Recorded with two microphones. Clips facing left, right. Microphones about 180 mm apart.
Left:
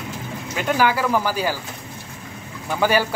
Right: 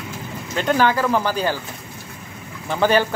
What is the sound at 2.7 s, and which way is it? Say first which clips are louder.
Speech: right 2 dB; 10° left (ahead or behind).